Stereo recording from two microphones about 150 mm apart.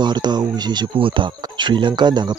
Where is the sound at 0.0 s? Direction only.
30° right (ahead or behind).